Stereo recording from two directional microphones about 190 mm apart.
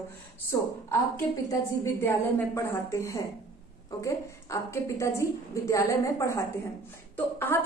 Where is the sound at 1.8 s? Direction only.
10° left (ahead or behind).